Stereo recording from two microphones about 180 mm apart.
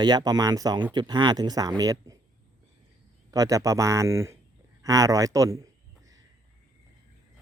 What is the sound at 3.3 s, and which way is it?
Speech, 20° right (ahead or behind).